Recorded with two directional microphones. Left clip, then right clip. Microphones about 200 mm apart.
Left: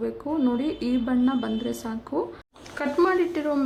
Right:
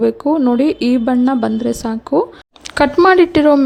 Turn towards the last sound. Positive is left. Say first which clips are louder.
# right 15 dB
turn(degrees=-45)  # may be behind; listen again after turning